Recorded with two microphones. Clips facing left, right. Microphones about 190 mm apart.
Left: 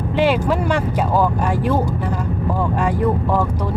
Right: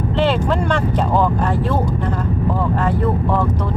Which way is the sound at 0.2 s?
10° left (ahead or behind).